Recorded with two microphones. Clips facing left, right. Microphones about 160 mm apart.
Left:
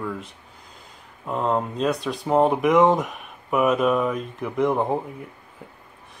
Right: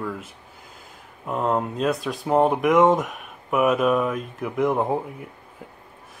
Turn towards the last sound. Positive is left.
turn(degrees=-5)  # may be behind; listen again after turning